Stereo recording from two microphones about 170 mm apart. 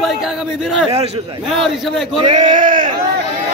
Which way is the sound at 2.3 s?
45° right (ahead or behind).